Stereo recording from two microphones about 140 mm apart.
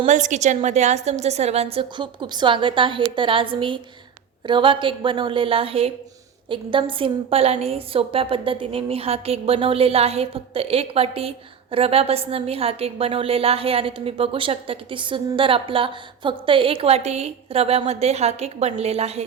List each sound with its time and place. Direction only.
0.1 s a woman's voice: 60° right (ahead or behind)